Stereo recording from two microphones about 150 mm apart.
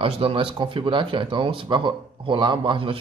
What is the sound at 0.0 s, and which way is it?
Speech, 40° right (ahead or behind).